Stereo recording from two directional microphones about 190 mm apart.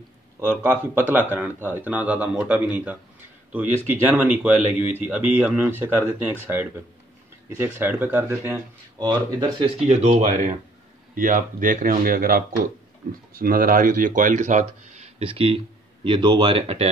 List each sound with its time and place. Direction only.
0.4 s speech: 10° right (ahead or behind)
8.9 s speech: 25° right (ahead or behind)
9.8 s speech: 35° right (ahead or behind)